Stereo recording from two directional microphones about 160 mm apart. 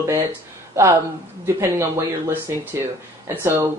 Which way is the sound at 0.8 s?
15° right (ahead or behind).